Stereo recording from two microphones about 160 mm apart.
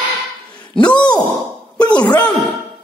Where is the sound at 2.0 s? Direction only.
25° left (ahead or behind).